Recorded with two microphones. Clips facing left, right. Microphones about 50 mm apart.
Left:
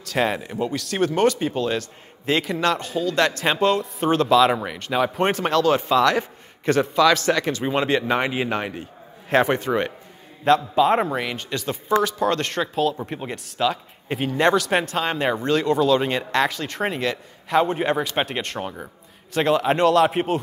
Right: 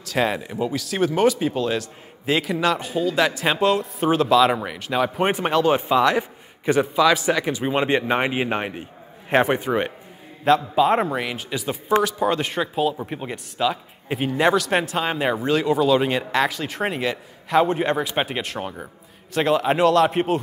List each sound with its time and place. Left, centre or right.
0.0 s speech: centre
5.3 s a man's voice: centre
10.4 s speech: centre